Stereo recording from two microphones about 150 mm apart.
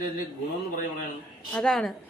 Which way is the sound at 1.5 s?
5° left (ahead or behind).